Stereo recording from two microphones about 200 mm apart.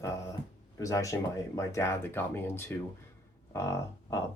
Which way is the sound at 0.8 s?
15° left (ahead or behind).